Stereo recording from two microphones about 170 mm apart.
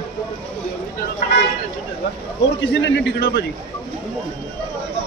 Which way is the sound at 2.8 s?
80° left.